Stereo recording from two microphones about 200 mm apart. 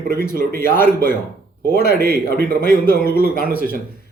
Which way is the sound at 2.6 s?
50° left (ahead or behind).